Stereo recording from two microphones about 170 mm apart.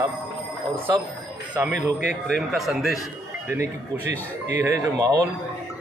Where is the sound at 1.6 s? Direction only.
15° right (ahead or behind).